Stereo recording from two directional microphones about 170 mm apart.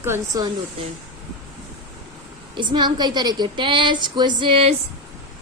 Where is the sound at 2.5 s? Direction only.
25° right (ahead or behind).